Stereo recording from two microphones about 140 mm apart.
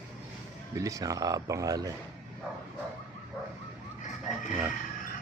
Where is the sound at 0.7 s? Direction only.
25° right (ahead or behind).